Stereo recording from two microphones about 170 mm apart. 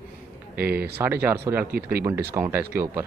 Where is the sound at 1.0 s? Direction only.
10° right (ahead or behind).